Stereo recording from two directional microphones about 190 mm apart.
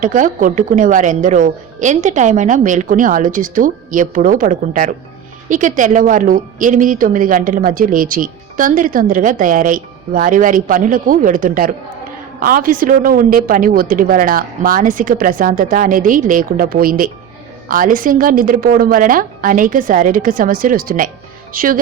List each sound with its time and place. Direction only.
0.0 s a woman's voice: 45° right (ahead or behind)